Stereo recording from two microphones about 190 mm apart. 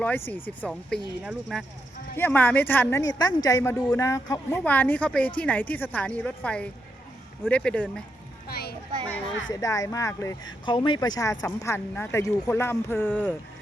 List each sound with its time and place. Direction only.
0.0 s speech: 10° left (ahead or behind)
2.1 s speech: 10° left (ahead or behind)
8.4 s speech: 55° left (ahead or behind)
9.5 s speech: 20° left (ahead or behind)